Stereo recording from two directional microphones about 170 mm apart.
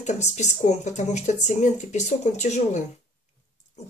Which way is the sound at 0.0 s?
45° left (ahead or behind).